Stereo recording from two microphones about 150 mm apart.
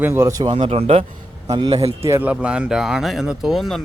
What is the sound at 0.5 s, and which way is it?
Speech, 40° right (ahead or behind).